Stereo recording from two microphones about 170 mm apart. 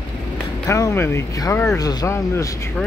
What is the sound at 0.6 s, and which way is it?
Speech, 15° left (ahead or behind).